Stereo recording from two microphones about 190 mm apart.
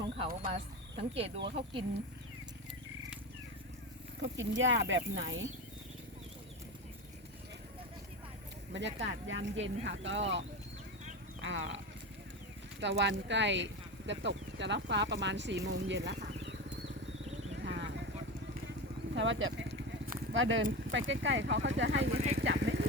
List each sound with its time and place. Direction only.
0.5 s speech: 30° right (ahead or behind)
4.2 s speech: 80° right
8.7 s speech: 70° right (ahead or behind)
12.8 s speech: 65° right (ahead or behind)
17.6 s vehicle: 65° right (ahead or behind)
19.1 s speech: 80° right
21.1 s speech: 70° right (ahead or behind)
22.4 s speech: 60° right (ahead or behind)